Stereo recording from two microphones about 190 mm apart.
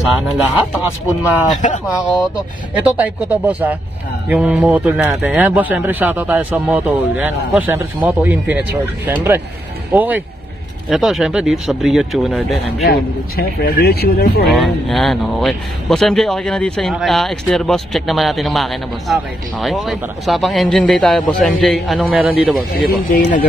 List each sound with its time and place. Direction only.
0.4 s speech: 10° right (ahead or behind)
1.6 s speech: 40° left (ahead or behind)
2.1 s speech: 5° right (ahead or behind)
12.8 s speech: 55° left (ahead or behind)
14.5 s speech: centre (ahead or behind)
22.8 s speech: 45° left (ahead or behind)